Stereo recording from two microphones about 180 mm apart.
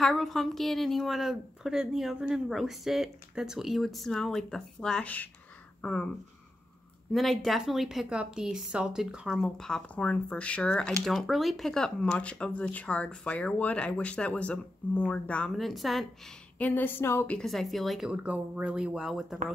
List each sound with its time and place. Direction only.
0.0 s a woman's voice: centre (ahead or behind)
7.1 s a woman's voice: centre (ahead or behind)